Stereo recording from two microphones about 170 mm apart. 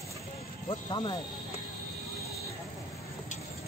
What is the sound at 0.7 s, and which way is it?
Speech, 30° left (ahead or behind).